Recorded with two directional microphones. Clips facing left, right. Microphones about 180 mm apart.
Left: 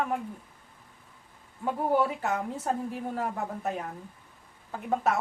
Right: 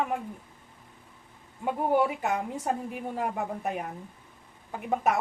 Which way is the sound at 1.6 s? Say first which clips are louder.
Right 1 dB; 15° right (ahead or behind).